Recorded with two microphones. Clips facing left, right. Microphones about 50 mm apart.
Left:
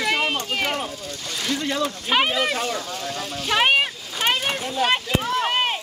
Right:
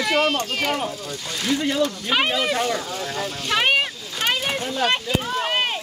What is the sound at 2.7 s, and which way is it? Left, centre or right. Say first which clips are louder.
Vehicle: right 2 dB; centre.